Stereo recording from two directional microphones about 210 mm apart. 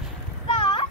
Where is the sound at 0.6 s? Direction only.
25° left (ahead or behind).